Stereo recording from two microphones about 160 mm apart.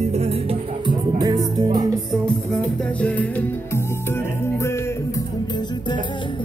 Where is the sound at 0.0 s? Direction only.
40° right (ahead or behind).